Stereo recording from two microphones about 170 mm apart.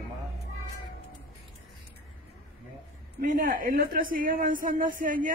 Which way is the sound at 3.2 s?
55° right (ahead or behind).